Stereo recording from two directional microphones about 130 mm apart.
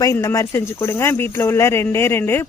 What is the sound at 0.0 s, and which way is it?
Speech, 25° left (ahead or behind).